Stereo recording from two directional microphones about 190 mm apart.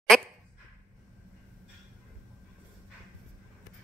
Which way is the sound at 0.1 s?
5° left (ahead or behind).